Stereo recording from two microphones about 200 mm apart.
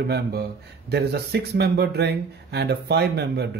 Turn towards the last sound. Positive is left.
turn(degrees=-55)  # may be behind; listen again after turning